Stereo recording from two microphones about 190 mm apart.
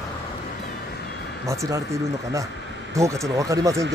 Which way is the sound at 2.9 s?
15° right (ahead or behind).